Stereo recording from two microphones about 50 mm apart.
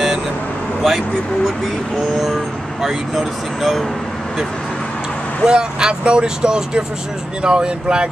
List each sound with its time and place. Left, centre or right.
0.8 s speech: centre
2.8 s speech: centre
5.4 s speech: centre